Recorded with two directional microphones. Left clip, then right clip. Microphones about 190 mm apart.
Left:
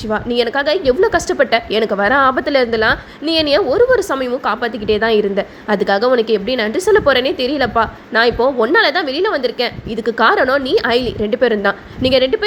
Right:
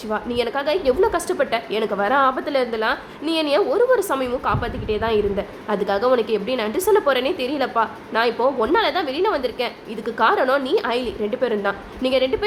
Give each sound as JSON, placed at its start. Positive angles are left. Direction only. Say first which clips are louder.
{"t": 0.1, "sound": "a woman's voice", "louder": "left 6 dB", "side_deg": 20}